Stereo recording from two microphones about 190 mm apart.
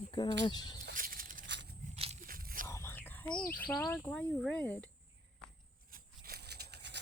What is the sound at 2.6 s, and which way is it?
Whispering, 15° left (ahead or behind).